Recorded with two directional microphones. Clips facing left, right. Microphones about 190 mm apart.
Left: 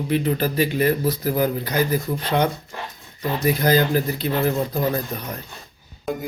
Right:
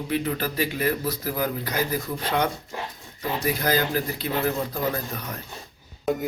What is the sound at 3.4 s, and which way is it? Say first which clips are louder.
Speech: left 6 dB; 25° left (ahead or behind).